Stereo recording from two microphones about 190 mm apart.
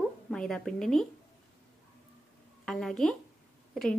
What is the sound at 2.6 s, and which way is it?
Speech, centre (ahead or behind).